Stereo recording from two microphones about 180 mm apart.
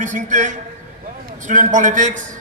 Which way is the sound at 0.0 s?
45° right (ahead or behind).